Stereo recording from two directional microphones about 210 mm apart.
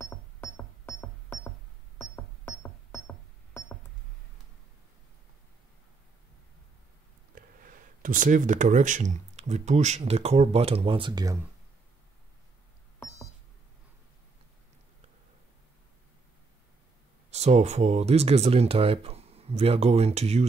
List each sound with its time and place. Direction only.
0.0 s music: 10° left (ahead or behind)
7.3 s speech: 40° right (ahead or behind); by 11.3 s 20° right (ahead or behind)
17.3 s speech: 30° right (ahead or behind)